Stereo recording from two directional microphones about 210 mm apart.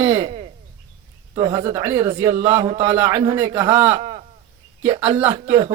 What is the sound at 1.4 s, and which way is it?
Speech, 25° right (ahead or behind).